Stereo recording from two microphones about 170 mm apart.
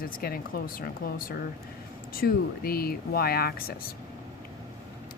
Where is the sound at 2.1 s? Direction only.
60° left (ahead or behind).